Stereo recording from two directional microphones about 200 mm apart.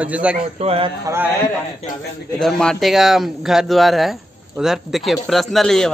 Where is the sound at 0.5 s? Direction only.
30° right (ahead or behind).